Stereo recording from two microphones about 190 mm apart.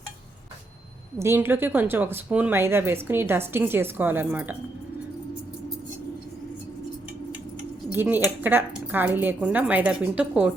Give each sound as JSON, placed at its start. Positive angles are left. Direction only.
{"t": 1.2, "sound": "speech", "side_deg": -10}
{"t": 7.9, "sound": "speech", "side_deg": -10}